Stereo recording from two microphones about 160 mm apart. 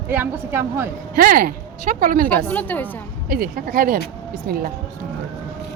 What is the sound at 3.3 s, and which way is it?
Speech, 70° right (ahead or behind).